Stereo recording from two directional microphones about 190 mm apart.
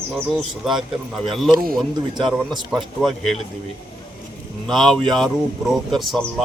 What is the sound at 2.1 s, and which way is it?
Speech, 25° right (ahead or behind).